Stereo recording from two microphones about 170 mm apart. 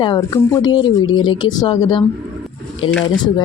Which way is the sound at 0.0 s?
20° left (ahead or behind).